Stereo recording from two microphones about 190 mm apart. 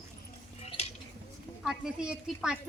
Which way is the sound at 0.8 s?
35° left (ahead or behind).